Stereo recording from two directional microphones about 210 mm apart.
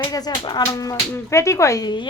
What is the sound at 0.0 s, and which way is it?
A woman's voice, 20° left (ahead or behind).